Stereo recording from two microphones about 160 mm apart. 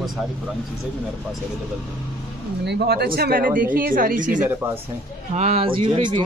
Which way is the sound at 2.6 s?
90° right.